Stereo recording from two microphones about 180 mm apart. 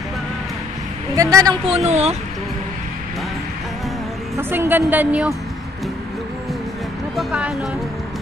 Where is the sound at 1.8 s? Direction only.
35° right (ahead or behind).